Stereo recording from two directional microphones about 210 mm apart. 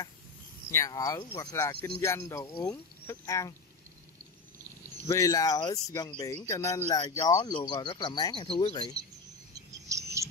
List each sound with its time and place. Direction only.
0.7 s speech: 15° left (ahead or behind)
5.0 s speech: 15° left (ahead or behind)
6.9 s speech: 25° left (ahead or behind)
7.2 s speech: 15° left (ahead or behind)
9.5 s cricket: 15° right (ahead or behind)